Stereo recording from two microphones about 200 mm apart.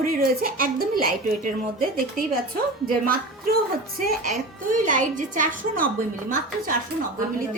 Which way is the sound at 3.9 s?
45° right (ahead or behind).